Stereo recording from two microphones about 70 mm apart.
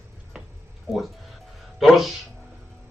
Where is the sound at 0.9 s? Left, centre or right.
Centre.